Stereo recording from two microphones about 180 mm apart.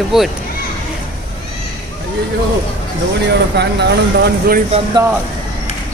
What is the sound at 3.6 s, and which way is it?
Speech, 70° right (ahead or behind).